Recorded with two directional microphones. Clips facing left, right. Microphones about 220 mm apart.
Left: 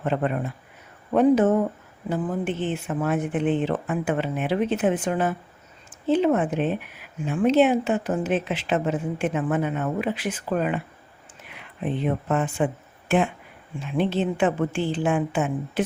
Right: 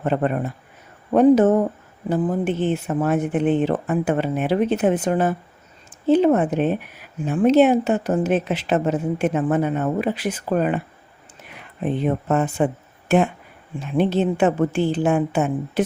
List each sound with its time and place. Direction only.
0.0 s a woman's voice: 45° right (ahead or behind)